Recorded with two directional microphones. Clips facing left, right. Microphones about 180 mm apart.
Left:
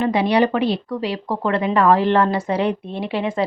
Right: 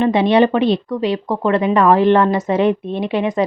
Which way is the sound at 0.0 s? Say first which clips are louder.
Right 4 dB; 25° right (ahead or behind).